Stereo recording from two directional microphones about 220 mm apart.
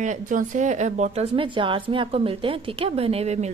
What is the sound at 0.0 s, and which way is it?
A woman's voice, 35° right (ahead or behind).